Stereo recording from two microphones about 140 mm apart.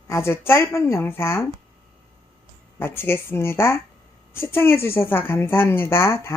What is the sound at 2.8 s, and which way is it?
A woman's voice, 15° left (ahead or behind).